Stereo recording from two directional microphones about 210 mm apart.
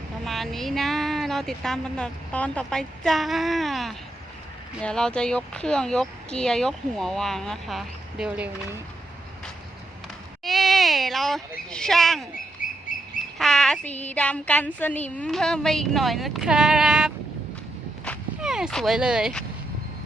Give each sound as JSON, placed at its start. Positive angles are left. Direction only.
{"t": 0.3, "sound": "speech", "side_deg": 0}
{"t": 10.4, "sound": "speech", "side_deg": 0}
{"t": 12.6, "sound": "duck", "side_deg": 40}
{"t": 13.4, "sound": "speech", "side_deg": 0}
{"t": 18.0, "sound": "walk", "side_deg": 0}